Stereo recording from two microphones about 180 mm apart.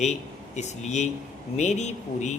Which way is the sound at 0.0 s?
40° left (ahead or behind).